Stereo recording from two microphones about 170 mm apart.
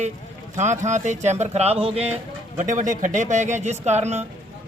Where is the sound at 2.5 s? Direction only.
50° right (ahead or behind).